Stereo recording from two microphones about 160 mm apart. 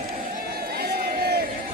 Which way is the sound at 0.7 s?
75° right (ahead or behind).